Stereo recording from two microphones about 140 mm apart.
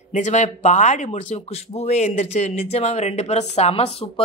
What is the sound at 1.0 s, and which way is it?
Speech, 50° left (ahead or behind).